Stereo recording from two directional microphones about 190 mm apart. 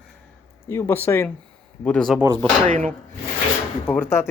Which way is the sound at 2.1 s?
15° right (ahead or behind).